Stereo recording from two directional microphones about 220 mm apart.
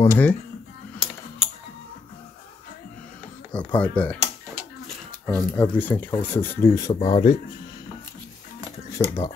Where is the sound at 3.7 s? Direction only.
5° left (ahead or behind).